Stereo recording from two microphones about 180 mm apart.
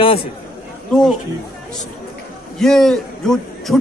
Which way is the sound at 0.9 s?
Centre (ahead or behind).